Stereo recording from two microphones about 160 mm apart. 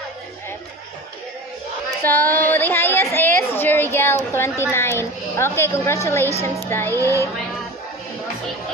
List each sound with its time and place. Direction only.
2.0 s a woman's voice: 10° left (ahead or behind)